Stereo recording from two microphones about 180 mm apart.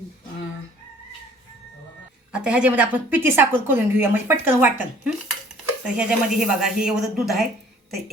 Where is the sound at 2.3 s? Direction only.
5° right (ahead or behind).